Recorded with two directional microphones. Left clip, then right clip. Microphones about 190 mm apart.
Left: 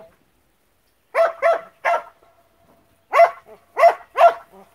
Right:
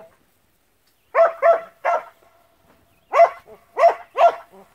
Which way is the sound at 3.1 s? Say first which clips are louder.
Even; 20° left (ahead or behind).